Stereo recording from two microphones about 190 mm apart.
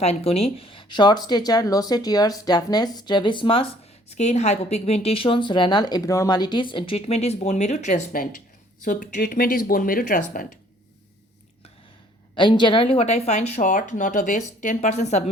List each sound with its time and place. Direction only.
0.0 s a woman's voice: 35° left (ahead or behind)
12.3 s a woman's voice: 25° left (ahead or behind)